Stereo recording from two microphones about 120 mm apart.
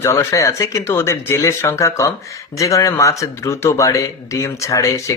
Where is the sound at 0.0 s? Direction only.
25° left (ahead or behind).